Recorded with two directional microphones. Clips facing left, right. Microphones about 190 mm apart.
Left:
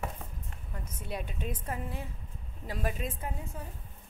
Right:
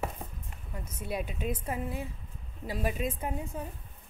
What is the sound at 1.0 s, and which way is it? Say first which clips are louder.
A woman's voice: right 4 dB; 10° right (ahead or behind).